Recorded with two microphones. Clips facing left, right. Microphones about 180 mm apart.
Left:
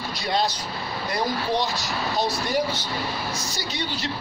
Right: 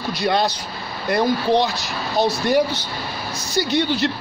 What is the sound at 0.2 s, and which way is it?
A man's voice, 60° right (ahead or behind).